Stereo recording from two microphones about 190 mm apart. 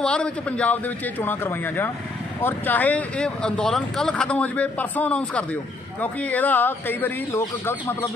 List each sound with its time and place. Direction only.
0.0 s speech: 5° left (ahead or behind)